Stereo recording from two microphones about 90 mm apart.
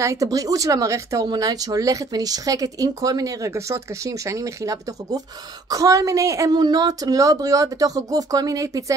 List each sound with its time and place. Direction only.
0.0 s speech: 35° right (ahead or behind)
1.2 s speech: 45° right (ahead or behind)